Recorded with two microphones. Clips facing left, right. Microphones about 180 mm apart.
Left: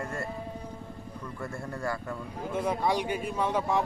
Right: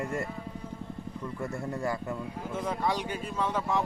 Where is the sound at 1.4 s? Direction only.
20° right (ahead or behind).